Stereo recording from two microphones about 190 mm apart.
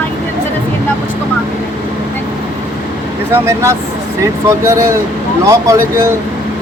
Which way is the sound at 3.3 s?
15° right (ahead or behind).